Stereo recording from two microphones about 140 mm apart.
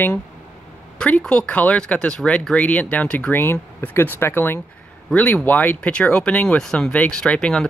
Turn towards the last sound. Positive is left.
turn(degrees=5)  # may be behind; listen again after turning